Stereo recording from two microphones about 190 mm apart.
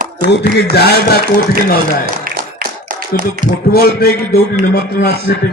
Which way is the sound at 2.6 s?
50° right (ahead or behind).